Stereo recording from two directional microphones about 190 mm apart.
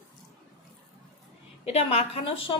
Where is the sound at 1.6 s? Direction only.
30° left (ahead or behind).